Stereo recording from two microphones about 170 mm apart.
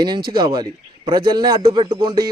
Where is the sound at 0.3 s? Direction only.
25° right (ahead or behind).